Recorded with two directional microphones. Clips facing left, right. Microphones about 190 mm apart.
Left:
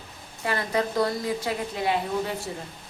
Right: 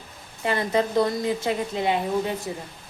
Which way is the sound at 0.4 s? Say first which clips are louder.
Right 3 dB; 20° right (ahead or behind).